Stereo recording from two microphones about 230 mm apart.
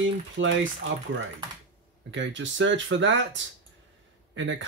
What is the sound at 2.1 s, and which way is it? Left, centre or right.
Speech, right.